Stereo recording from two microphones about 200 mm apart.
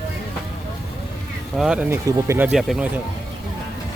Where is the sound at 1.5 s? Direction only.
5° right (ahead or behind).